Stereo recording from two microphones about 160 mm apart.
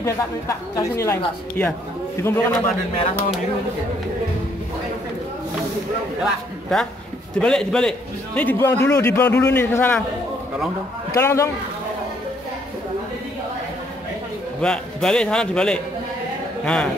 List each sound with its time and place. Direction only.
0.0 s speech: 20° left (ahead or behind)
6.2 s a man's voice: centre (ahead or behind)
11.1 s speech: 15° left (ahead or behind)
14.6 s a man's voice: 5° left (ahead or behind)